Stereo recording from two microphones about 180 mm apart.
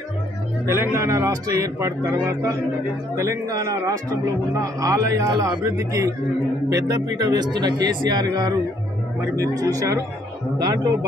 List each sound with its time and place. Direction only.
0.7 s a man's voice: 15° right (ahead or behind)